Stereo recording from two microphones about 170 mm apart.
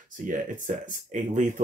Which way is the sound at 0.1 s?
50° right (ahead or behind).